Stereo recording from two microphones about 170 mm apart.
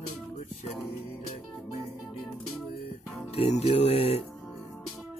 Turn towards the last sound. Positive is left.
turn(degrees=35)  # may be behind; listen again after turning